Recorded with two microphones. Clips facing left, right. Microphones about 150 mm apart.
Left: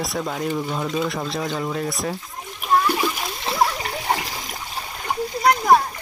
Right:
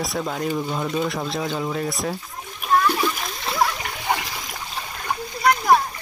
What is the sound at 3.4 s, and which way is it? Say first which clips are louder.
Splash: left 1 dB; 35° left (ahead or behind).